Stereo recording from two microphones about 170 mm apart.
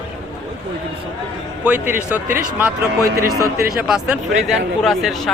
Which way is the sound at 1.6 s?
10° right (ahead or behind).